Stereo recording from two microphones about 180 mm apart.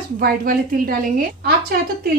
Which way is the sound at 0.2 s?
55° right (ahead or behind).